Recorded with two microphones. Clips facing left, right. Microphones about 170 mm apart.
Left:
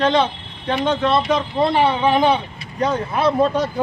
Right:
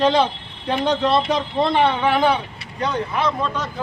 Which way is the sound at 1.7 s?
15° left (ahead or behind).